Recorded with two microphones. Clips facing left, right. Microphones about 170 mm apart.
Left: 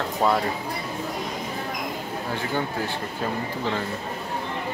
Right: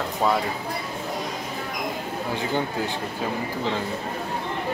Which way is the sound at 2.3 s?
15° right (ahead or behind).